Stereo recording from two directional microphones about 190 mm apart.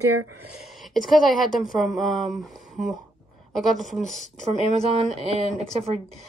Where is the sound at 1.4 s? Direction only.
Centre (ahead or behind).